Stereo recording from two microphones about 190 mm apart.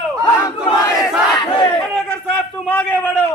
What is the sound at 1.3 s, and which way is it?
Crowd, 20° left (ahead or behind).